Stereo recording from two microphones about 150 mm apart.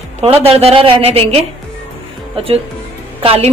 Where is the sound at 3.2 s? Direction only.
40° right (ahead or behind).